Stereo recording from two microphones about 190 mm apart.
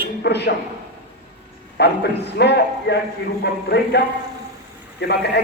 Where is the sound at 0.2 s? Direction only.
60° left (ahead or behind).